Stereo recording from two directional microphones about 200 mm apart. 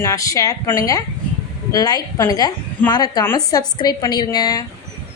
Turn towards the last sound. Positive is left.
turn(degrees=20)  # may be behind; listen again after turning